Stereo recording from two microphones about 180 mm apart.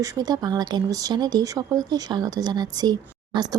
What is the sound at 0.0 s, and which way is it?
Speech, 20° right (ahead or behind).